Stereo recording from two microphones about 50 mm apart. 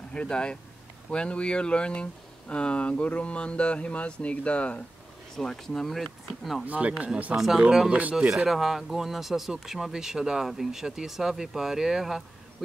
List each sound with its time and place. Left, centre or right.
0.1 s speech: centre
5.3 s speech: centre
6.6 s speech: right
7.3 s speech: centre
7.9 s speech: right
8.5 s speech: centre